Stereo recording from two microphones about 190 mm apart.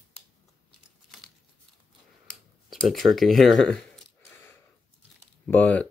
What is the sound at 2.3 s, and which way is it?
Speech, centre (ahead or behind).